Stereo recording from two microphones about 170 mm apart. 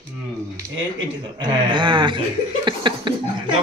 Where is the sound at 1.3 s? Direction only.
30° right (ahead or behind).